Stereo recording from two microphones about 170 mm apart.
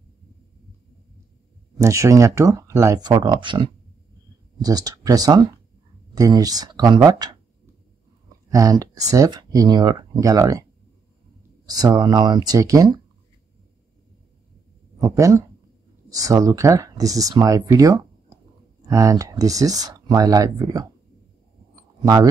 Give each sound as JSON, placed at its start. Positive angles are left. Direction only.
{"t": 1.8, "sound": "speech", "side_deg": -20}
{"t": 8.5, "sound": "speech", "side_deg": -20}
{"t": 11.6, "sound": "speech", "side_deg": -20}
{"t": 15.0, "sound": "speech", "side_deg": -20}
{"t": 22.0, "sound": "speech", "side_deg": -20}